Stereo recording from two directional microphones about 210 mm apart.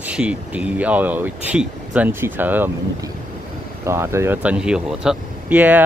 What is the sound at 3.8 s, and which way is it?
Speech, 15° right (ahead or behind).